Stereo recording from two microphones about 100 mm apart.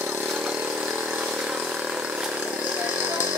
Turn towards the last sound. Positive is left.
turn(degrees=-15)  # may be behind; listen again after turning